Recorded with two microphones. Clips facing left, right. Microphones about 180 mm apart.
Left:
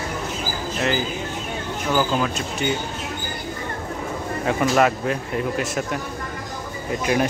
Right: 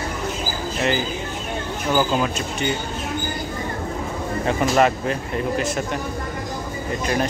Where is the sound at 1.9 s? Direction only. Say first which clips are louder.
Right 1 dB; 5° right (ahead or behind).